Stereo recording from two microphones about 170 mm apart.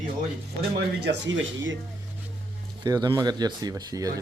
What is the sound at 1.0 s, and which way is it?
Speech, 90° right.